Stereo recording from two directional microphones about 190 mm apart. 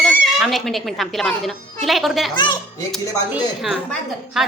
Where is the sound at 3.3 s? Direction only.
Centre (ahead or behind).